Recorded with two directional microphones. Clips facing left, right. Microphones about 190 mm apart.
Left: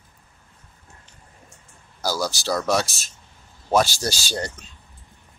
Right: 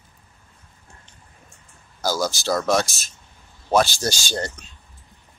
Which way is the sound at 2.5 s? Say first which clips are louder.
Right 2 dB; 5° left (ahead or behind).